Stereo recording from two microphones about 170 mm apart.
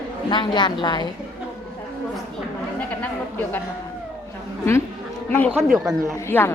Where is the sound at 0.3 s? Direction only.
25° left (ahead or behind).